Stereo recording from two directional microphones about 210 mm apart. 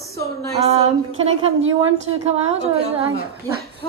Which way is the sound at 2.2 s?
30° right (ahead or behind).